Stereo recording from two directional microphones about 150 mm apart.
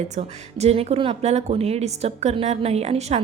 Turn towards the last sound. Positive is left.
turn(degrees=-45)  # may be behind; listen again after turning